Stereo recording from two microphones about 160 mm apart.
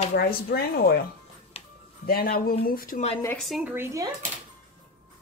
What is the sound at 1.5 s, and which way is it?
Music, 35° left (ahead or behind).